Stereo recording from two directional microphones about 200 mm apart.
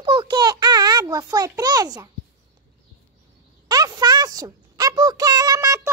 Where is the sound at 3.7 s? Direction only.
20° right (ahead or behind).